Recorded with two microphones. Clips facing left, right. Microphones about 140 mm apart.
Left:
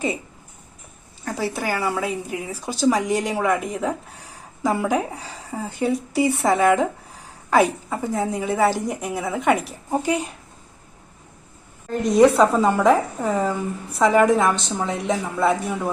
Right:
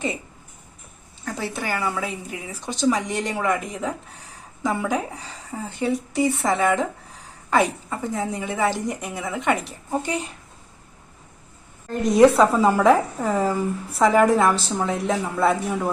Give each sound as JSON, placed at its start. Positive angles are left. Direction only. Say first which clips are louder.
{"t": 1.4, "sound": "a woman's voice", "louder": "left 3 dB", "side_deg": 5}
{"t": 11.9, "sound": "a woman's voice", "louder": "even", "side_deg": 0}